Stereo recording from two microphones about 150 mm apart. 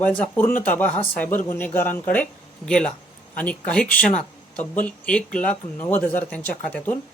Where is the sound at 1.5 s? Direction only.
10° left (ahead or behind).